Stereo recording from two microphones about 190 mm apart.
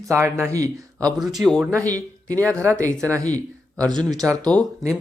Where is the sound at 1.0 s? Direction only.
Centre (ahead or behind).